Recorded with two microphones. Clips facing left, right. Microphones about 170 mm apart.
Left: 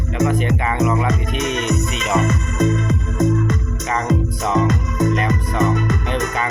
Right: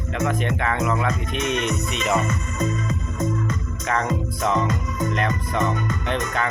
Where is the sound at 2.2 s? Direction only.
80° left.